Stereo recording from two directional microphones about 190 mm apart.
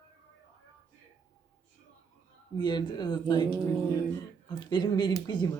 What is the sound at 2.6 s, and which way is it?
Speech, 20° left (ahead or behind).